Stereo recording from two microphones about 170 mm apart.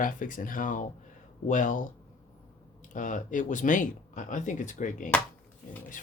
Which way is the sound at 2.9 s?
50° left (ahead or behind).